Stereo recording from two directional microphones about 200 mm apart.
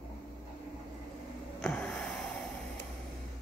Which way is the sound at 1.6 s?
5° left (ahead or behind).